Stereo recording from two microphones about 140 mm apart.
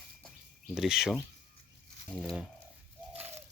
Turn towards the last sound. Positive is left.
turn(degrees=-50)  # may be behind; listen again after turning